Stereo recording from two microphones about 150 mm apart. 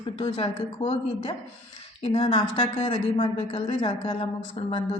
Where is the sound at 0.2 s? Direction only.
40° left (ahead or behind).